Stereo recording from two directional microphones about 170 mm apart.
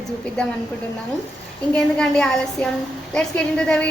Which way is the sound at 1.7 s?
5° left (ahead or behind).